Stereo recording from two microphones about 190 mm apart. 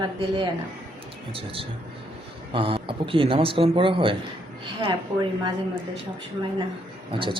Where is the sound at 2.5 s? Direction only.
30° right (ahead or behind).